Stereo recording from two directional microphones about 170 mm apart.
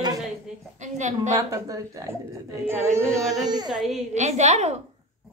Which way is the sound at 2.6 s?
15° right (ahead or behind).